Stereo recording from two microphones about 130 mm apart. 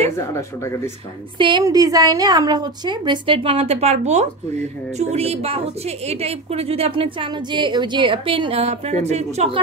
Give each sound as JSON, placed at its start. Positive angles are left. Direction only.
{"t": 0.3, "sound": "speech", "side_deg": 20}
{"t": 1.6, "sound": "a woman's voice", "side_deg": -30}